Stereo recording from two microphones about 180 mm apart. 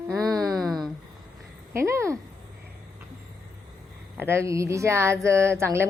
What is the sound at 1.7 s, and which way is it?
Speech, 15° right (ahead or behind).